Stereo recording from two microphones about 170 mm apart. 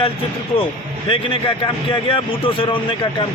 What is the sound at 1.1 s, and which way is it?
Speech, 30° left (ahead or behind).